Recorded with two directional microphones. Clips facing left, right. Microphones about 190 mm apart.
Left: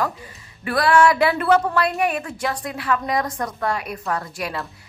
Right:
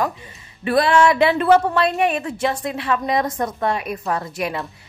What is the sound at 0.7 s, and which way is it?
A woman's voice, 25° right (ahead or behind).